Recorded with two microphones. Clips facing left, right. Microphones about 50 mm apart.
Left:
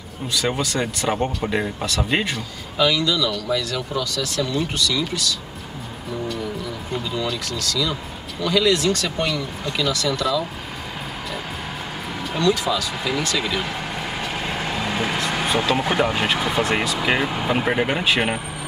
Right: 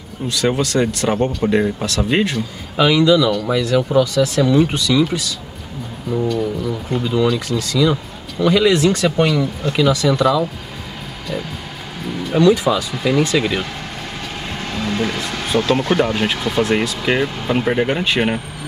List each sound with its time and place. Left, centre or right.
0.3 s speech: centre
2.8 s speech: right
7.3 s speech: right
12.4 s speech: centre
14.5 s speech: centre